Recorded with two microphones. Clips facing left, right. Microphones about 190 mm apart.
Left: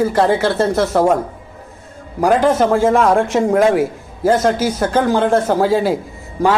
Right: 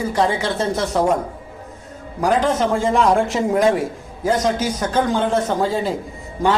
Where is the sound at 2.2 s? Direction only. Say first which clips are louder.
Left 4 dB; 10° left (ahead or behind).